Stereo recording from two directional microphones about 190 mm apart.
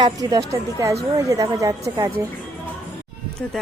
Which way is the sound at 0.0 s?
20° right (ahead or behind).